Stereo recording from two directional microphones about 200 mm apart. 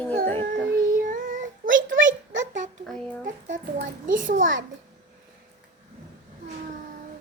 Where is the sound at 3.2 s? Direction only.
40° right (ahead or behind).